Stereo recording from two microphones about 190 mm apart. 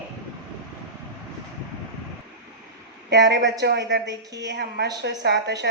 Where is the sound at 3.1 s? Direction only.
65° right (ahead or behind).